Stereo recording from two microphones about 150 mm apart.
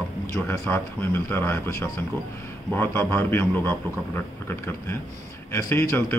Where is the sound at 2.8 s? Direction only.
15° left (ahead or behind).